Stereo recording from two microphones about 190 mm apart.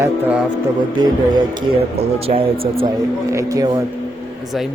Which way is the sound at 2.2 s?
30° right (ahead or behind).